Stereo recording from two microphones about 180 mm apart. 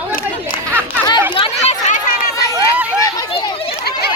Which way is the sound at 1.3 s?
30° left (ahead or behind).